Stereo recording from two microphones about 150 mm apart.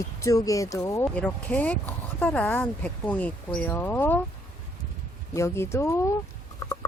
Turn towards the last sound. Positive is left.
turn(degrees=30)  # may be behind; listen again after turning